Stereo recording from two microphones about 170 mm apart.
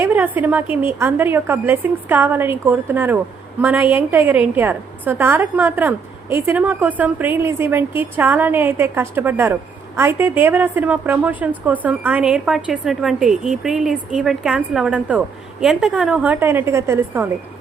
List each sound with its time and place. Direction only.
0.0 s a woman's voice: 10° right (ahead or behind)